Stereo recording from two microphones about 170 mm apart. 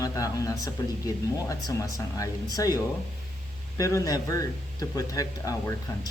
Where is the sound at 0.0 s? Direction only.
20° left (ahead or behind).